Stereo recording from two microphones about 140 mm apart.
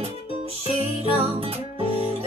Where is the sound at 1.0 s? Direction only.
45° right (ahead or behind).